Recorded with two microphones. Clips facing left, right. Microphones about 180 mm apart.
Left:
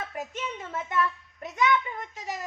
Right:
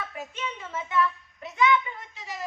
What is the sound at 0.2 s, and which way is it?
A child's voice, 40° left (ahead or behind).